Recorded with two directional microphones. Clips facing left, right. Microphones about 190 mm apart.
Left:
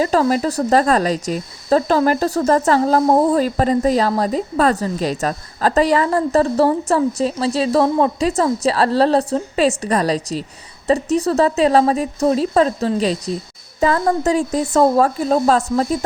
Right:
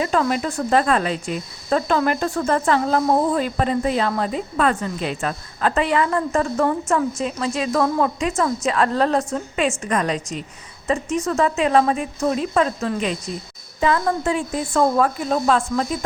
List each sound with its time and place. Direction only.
0.0 s speech: 35° left (ahead or behind)